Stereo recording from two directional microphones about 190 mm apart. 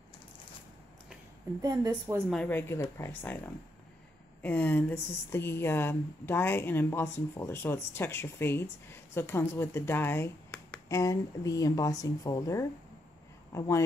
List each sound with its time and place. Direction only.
1.6 s a woman's voice: 20° right (ahead or behind)
2.2 s a woman's voice: 5° left (ahead or behind)